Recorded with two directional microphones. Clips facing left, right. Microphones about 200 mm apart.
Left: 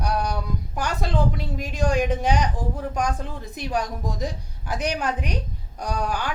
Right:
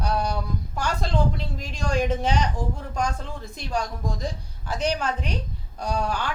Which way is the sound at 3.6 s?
15° left (ahead or behind).